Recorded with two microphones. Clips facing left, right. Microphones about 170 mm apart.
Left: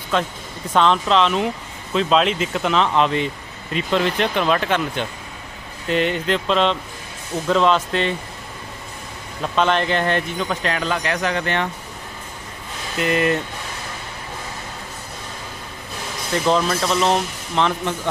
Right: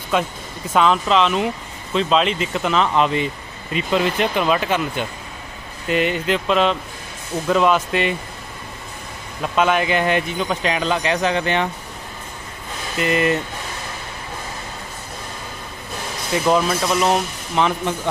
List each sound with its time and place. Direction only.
0.1 s speech: 10° right (ahead or behind)
9.4 s speech: 5° right (ahead or behind)
13.0 s speech: centre (ahead or behind)
16.4 s speech: 10° right (ahead or behind)